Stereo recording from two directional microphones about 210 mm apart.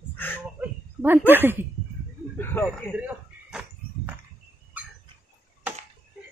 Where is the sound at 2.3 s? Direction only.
10° left (ahead or behind).